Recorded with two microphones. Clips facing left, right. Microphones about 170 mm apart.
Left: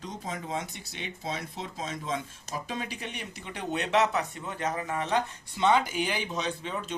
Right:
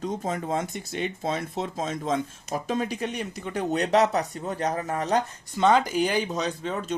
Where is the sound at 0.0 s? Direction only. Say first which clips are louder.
Right 8 dB; 50° right (ahead or behind).